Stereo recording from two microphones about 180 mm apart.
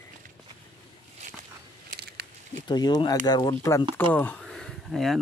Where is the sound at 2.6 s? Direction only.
25° left (ahead or behind).